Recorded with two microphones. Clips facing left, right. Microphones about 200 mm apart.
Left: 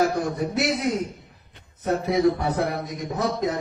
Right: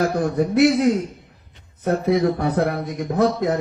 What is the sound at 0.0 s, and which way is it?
Speech, 55° right (ahead or behind).